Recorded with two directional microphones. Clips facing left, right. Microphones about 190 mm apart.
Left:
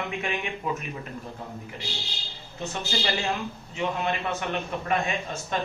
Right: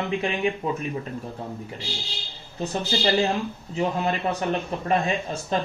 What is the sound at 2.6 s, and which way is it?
Speech, 35° right (ahead or behind).